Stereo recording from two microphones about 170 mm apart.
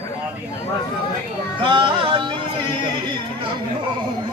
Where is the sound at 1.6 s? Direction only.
30° right (ahead or behind).